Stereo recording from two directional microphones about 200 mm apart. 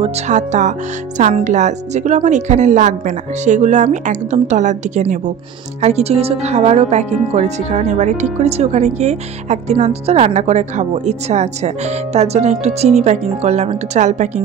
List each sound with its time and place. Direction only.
0.0 s speech: 40° right (ahead or behind)